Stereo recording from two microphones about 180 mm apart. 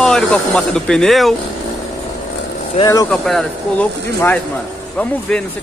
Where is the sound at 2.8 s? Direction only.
20° left (ahead or behind).